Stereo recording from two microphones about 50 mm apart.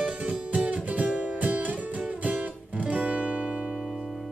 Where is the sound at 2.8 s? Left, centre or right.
Right.